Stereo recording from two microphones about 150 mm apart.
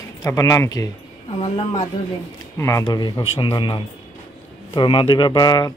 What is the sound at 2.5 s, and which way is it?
A man's voice, 20° left (ahead or behind).